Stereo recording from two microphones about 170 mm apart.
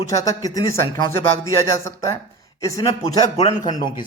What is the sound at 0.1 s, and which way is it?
Speech, 20° left (ahead or behind).